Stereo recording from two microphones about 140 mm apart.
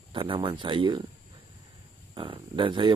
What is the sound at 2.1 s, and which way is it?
Speech, 35° right (ahead or behind).